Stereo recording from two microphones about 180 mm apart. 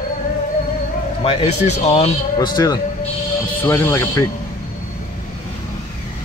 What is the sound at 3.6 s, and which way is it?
Speech, 15° left (ahead or behind).